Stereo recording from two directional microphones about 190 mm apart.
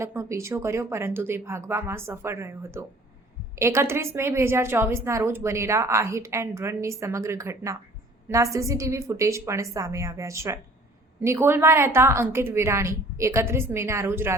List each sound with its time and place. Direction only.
0.0 s a woman's voice: 15° right (ahead or behind)